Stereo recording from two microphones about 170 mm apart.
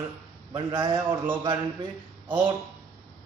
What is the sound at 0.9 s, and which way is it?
Speech, 15° right (ahead or behind).